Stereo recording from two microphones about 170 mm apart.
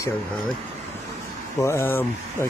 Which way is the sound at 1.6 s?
15° left (ahead or behind).